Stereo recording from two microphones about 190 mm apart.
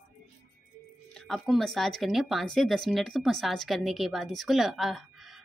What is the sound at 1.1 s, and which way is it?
Speech, centre (ahead or behind).